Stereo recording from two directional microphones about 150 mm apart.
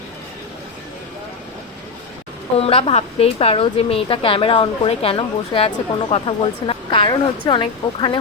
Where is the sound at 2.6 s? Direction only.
40° left (ahead or behind).